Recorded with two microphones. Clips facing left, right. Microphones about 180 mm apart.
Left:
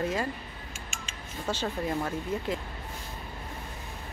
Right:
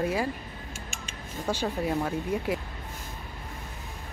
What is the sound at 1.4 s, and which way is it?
Speech, 10° right (ahead or behind).